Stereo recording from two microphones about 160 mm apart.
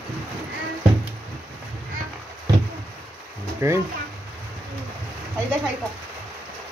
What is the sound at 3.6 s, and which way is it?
Speech, 15° right (ahead or behind).